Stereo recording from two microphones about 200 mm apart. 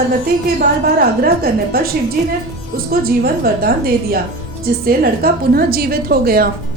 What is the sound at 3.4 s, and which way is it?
A woman's voice, 50° right (ahead or behind).